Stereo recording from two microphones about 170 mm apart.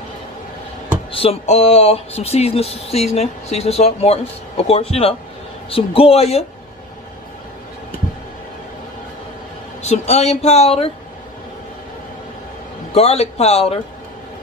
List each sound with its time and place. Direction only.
1.1 s speech: 35° left (ahead or behind)
9.8 s speech: 40° left (ahead or behind)
12.9 s speech: 40° left (ahead or behind)